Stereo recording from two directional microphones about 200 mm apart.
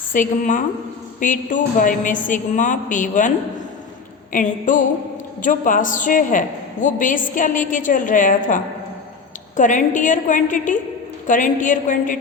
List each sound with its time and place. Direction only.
0.1 s a woman's voice: 40° left (ahead or behind)